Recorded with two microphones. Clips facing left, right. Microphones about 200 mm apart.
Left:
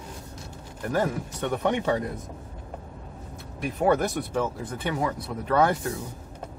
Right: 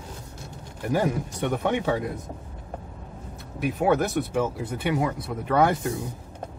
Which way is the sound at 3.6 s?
5° right (ahead or behind).